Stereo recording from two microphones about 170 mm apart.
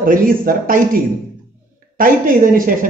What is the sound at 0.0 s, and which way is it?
A man's voice, 55° right (ahead or behind).